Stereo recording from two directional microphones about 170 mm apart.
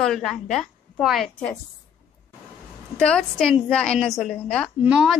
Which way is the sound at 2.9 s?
5° left (ahead or behind).